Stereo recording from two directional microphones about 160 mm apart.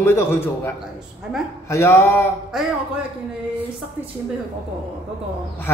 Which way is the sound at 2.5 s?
5° right (ahead or behind).